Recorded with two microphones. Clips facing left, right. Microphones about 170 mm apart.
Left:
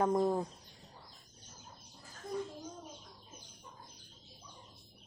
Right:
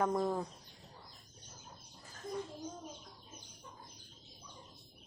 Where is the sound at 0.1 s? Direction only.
20° left (ahead or behind).